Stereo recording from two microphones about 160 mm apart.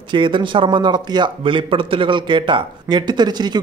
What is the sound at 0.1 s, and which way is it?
A man's voice, 30° right (ahead or behind).